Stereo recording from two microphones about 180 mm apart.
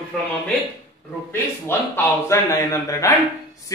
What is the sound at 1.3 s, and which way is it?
A man's voice, 15° left (ahead or behind).